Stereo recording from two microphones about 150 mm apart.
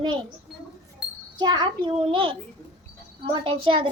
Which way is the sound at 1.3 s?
30° right (ahead or behind).